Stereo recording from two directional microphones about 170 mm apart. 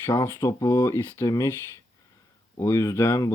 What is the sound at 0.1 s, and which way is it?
Speech, 20° left (ahead or behind).